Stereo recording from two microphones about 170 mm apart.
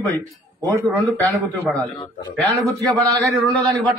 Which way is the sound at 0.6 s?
20° right (ahead or behind).